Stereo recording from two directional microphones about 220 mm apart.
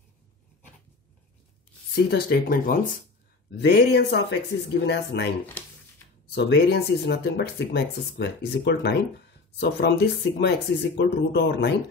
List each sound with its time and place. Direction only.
2.0 s speech: 45° left (ahead or behind)
3.5 s speech: 50° left (ahead or behind)
6.3 s speech: 50° left (ahead or behind)